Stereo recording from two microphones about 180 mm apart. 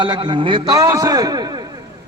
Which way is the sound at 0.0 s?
25° right (ahead or behind).